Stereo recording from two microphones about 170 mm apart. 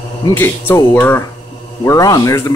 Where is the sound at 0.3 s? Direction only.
10° left (ahead or behind).